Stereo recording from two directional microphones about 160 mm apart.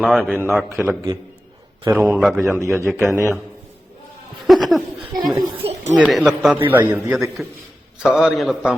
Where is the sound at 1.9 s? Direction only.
15° right (ahead or behind).